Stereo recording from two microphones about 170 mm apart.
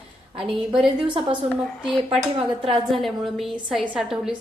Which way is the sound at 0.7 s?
30° right (ahead or behind).